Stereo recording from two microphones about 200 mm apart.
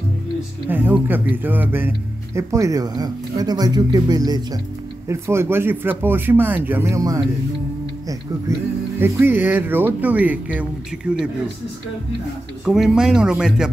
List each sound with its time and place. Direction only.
0.7 s speech: 10° right (ahead or behind)
9.0 s speech: 10° right (ahead or behind)
12.6 s speech: centre (ahead or behind)